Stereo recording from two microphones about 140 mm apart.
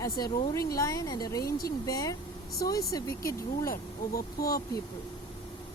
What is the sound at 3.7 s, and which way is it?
Speech, 90° left.